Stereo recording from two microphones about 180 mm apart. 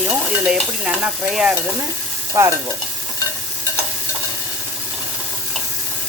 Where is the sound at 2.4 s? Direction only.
15° right (ahead or behind).